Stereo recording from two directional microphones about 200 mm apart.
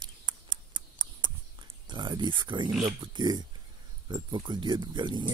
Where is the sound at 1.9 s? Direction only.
20° right (ahead or behind).